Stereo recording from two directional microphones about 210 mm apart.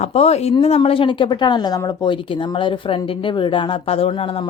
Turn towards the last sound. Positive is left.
turn(degrees=25)  # may be behind; listen again after turning